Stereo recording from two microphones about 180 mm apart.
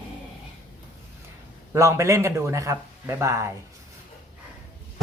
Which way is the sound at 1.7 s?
15° right (ahead or behind).